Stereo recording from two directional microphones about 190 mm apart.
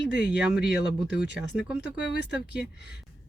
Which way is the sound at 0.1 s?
65° left (ahead or behind).